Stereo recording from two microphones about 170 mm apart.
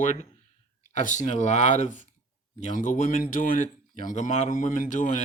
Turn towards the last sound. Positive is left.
turn(degrees=50)  # may be behind; listen again after turning